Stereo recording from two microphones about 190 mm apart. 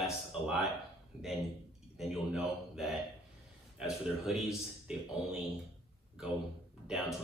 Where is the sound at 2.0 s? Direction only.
Centre (ahead or behind).